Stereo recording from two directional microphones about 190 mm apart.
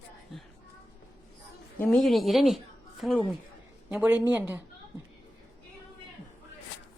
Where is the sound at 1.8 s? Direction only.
Centre (ahead or behind).